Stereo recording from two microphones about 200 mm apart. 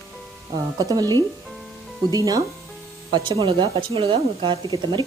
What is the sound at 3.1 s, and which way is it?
Speech, 25° right (ahead or behind).